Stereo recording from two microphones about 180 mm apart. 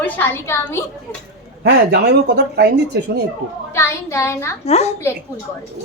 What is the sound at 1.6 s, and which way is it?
Speech, 65° right (ahead or behind).